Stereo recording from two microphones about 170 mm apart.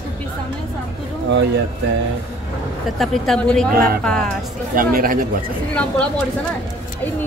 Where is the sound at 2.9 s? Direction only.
Centre (ahead or behind).